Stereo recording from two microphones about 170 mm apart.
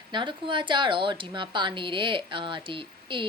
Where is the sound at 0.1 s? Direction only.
25° right (ahead or behind).